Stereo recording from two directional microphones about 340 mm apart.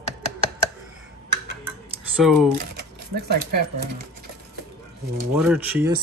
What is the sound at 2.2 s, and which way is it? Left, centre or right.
Speech, centre.